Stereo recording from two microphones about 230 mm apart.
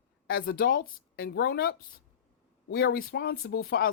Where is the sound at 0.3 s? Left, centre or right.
Left.